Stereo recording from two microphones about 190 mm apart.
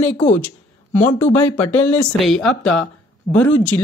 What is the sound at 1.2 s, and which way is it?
Speech, 10° left (ahead or behind).